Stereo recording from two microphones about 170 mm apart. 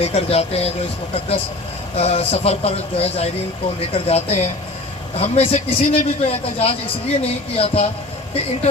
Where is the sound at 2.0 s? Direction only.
35° left (ahead or behind).